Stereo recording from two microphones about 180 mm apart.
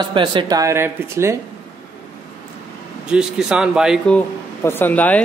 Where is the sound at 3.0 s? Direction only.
5° right (ahead or behind).